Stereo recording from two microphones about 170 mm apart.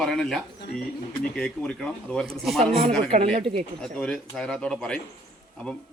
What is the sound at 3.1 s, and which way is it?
Speech, 40° right (ahead or behind).